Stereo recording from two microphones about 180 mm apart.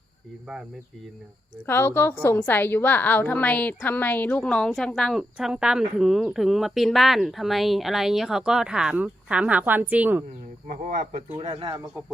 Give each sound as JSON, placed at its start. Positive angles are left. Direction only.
{"t": 1.6, "sound": "a woman's voice", "side_deg": 10}
{"t": 10.7, "sound": "speech", "side_deg": -45}